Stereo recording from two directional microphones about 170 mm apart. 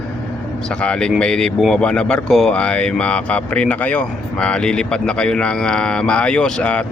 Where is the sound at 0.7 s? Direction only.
5° left (ahead or behind).